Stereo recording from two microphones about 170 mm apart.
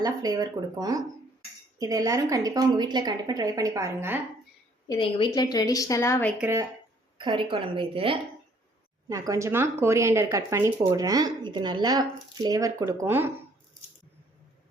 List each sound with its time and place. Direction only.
0.0 s speech: 20° right (ahead or behind)
4.9 s a woman's voice: 30° left (ahead or behind)
6.4 s speech: 15° right (ahead or behind)
7.2 s a woman's voice: 30° right (ahead or behind)
9.0 s speech: 20° right (ahead or behind)